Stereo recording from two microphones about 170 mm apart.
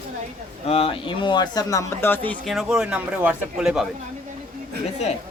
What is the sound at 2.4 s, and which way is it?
Speech, centre (ahead or behind).